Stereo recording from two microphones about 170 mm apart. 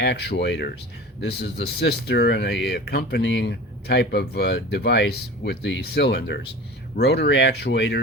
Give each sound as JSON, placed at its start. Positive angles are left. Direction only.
{"t": 0.0, "sound": "speech", "side_deg": 85}
{"t": 1.2, "sound": "speech", "side_deg": 75}